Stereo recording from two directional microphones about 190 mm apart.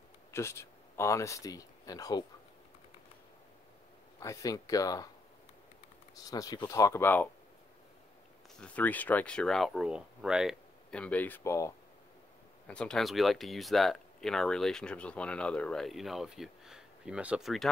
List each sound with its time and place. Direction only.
0.3 s speech: 15° left (ahead or behind)
4.2 s speech: 15° left (ahead or behind)
6.1 s speech: 20° left (ahead or behind)
8.5 s speech: 5° left (ahead or behind)
12.6 s speech: 5° left (ahead or behind)